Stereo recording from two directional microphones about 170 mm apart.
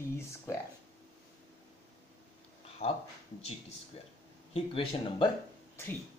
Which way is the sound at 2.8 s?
65° left (ahead or behind).